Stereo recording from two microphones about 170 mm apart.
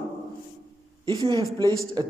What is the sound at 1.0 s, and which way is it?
A man's voice, 25° right (ahead or behind).